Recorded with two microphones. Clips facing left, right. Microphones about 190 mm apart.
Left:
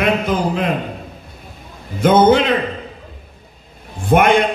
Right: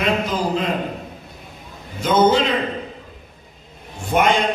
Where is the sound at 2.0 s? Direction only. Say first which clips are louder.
Left 4 dB; 55° left (ahead or behind).